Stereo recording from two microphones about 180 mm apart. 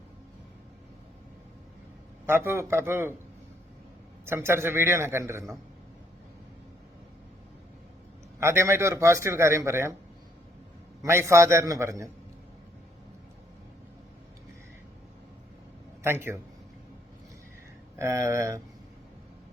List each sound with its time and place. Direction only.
2.2 s a man's voice: 15° right (ahead or behind)
4.3 s a man's voice: 15° right (ahead or behind)
8.4 s a man's voice: 15° right (ahead or behind)
11.0 s a man's voice: 15° right (ahead or behind)
16.0 s a man's voice: 15° right (ahead or behind)
18.0 s a man's voice: 15° right (ahead or behind)